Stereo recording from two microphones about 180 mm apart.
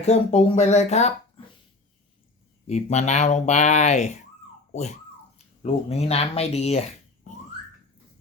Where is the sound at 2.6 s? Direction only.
40° left (ahead or behind).